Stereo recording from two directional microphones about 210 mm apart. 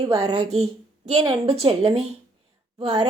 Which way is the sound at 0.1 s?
20° right (ahead or behind).